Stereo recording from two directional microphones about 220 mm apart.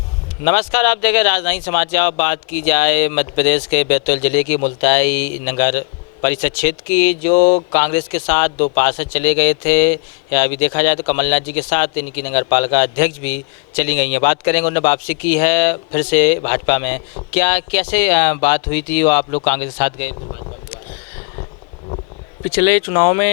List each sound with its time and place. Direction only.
0.4 s speech: 10° left (ahead or behind)
7.3 s speech: 35° left (ahead or behind)
7.7 s speech: 10° left (ahead or behind)
22.5 s speech: 10° left (ahead or behind)